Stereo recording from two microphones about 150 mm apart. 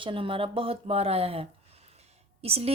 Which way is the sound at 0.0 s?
35° right (ahead or behind).